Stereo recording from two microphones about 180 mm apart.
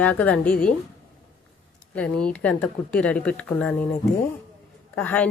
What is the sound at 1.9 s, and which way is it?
Speech, 5° left (ahead or behind).